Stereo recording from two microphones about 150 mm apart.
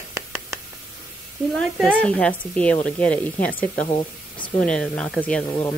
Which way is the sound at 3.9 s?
35° left (ahead or behind).